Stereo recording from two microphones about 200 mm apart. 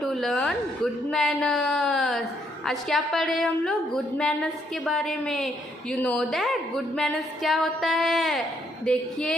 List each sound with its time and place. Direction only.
0.0 s a woman's voice: centre (ahead or behind)